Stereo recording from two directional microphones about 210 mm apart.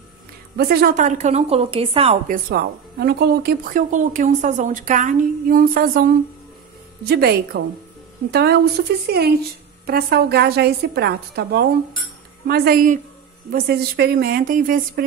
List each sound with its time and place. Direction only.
0.6 s speech: 45° right (ahead or behind); by 2.1 s 25° right (ahead or behind)
2.2 s a woman's voice: 45° right (ahead or behind)